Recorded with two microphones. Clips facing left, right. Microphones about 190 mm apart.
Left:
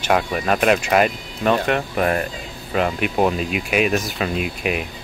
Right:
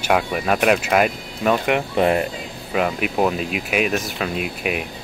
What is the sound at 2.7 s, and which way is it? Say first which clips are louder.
Speech: left 1 dB; 5° right (ahead or behind).